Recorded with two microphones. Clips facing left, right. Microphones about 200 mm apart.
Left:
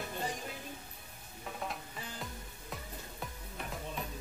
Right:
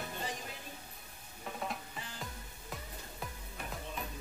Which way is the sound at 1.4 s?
Centre (ahead or behind).